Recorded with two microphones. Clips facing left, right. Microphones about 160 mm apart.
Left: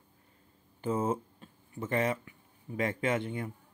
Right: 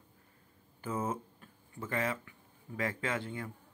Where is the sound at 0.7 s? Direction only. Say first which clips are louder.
Left 5 dB; 25° left (ahead or behind).